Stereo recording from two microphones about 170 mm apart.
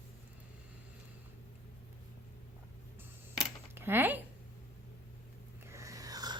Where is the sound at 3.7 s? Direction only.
15° right (ahead or behind).